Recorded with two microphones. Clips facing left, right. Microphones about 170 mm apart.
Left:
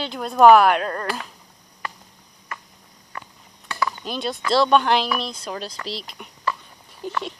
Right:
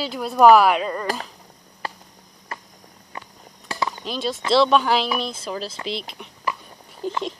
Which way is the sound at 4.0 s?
Centre (ahead or behind).